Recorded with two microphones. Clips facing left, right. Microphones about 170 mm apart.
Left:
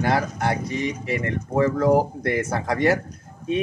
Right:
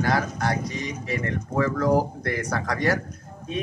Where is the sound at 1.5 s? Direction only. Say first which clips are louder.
Left 3 dB; 25° left (ahead or behind).